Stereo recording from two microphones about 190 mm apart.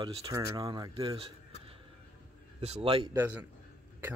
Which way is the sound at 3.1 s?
10° right (ahead or behind).